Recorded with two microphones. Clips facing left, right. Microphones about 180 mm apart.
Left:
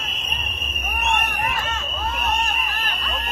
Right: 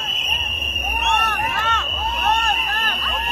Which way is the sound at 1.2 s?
70° right (ahead or behind).